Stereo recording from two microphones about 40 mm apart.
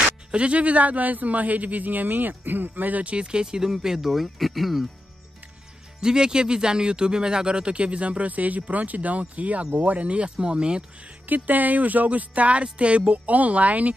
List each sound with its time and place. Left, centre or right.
0.3 s a man's voice: right; by 4.8 s centre
5.9 s a man's voice: centre
11.2 s a man's voice: right